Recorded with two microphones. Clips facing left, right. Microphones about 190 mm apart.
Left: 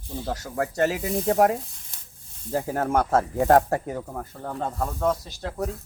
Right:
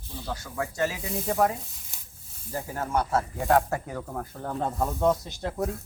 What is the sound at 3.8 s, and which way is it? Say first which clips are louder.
Speech: left 4 dB; 15° left (ahead or behind).